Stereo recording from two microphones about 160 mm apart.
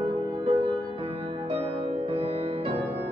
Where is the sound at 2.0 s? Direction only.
35° right (ahead or behind).